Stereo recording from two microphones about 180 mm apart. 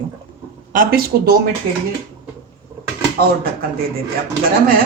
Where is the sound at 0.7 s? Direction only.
55° right (ahead or behind).